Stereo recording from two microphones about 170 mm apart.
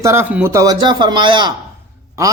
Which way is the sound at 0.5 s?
20° right (ahead or behind).